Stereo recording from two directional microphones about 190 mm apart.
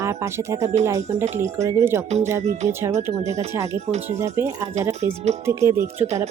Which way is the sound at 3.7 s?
35° right (ahead or behind).